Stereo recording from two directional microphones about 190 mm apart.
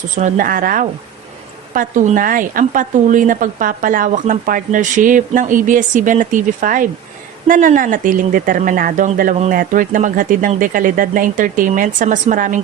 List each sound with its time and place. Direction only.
0.2 s speech: 45° right (ahead or behind)